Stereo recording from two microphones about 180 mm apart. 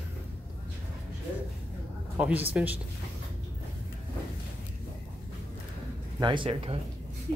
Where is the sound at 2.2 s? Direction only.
5° right (ahead or behind).